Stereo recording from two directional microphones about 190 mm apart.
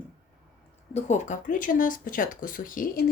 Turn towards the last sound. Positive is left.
turn(degrees=45)  # may be behind; listen again after turning